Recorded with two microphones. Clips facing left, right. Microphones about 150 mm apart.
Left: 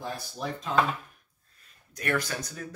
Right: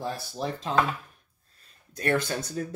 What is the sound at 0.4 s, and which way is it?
Speech, 30° right (ahead or behind).